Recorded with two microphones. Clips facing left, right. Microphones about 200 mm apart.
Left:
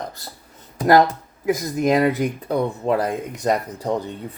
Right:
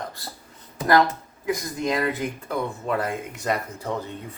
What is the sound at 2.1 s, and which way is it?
Speech, 35° left (ahead or behind).